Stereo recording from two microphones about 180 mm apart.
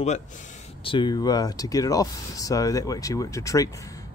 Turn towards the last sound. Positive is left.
turn(degrees=20)  # may be behind; listen again after turning